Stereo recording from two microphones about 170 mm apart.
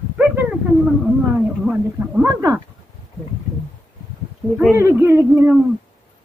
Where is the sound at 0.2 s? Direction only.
5° right (ahead or behind).